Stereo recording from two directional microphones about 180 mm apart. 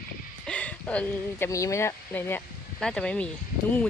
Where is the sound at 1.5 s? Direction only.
15° left (ahead or behind).